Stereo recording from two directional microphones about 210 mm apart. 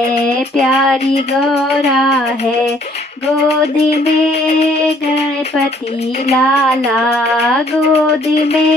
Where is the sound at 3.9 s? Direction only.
30° left (ahead or behind).